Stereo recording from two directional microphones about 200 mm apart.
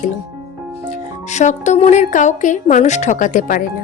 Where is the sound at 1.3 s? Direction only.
35° left (ahead or behind).